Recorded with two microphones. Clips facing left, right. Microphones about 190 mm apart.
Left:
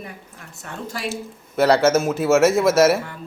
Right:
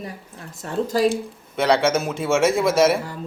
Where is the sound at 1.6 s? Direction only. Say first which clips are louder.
Left 3 dB; 5° left (ahead or behind).